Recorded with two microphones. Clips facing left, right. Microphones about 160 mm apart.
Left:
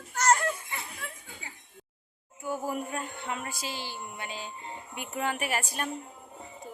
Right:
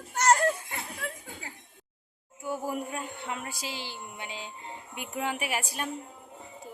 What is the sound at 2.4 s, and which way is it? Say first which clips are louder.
Speech: even; 10° right (ahead or behind).